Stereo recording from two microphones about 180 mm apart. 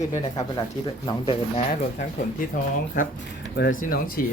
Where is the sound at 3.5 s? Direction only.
60° left (ahead or behind).